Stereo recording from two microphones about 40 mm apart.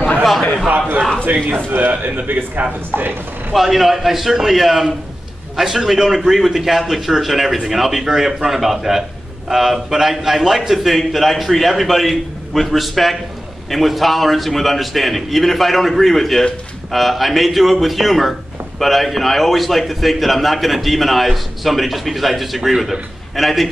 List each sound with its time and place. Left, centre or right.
1.2 s a man's voice: right
3.5 s a man's voice: centre